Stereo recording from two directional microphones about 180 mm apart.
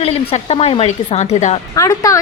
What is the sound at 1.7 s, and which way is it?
Speech, 20° left (ahead or behind).